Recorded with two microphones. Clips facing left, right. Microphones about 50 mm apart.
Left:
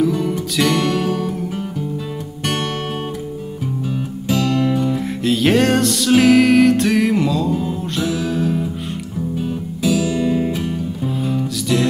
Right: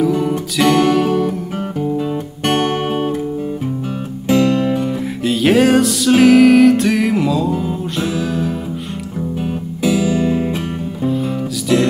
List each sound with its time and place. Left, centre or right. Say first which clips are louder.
0.0 s music: right 2 dB; centre
2.4 s music: right 6 dB; right
4.3 s music: right 4 dB; right
4.8 s music: even; centre
9.4 s music: right 3 dB; right
11.1 s music: right 3 dB; centre